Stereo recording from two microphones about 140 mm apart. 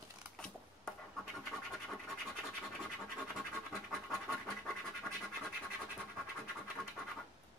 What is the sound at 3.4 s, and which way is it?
Scratch, centre (ahead or behind).